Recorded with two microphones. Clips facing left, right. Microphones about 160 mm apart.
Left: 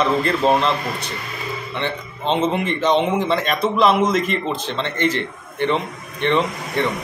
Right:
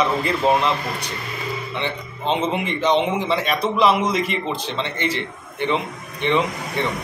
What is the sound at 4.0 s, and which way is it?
Speech, 50° left (ahead or behind).